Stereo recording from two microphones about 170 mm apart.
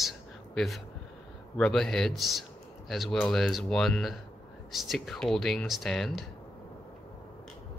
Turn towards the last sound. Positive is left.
turn(degrees=0)  # may be behind; listen again after turning